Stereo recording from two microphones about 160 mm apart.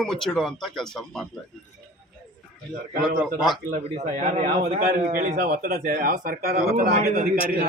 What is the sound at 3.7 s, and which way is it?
A man's voice, 50° right (ahead or behind).